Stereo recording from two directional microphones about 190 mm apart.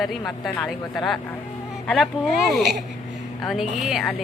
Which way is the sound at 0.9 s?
Centre (ahead or behind).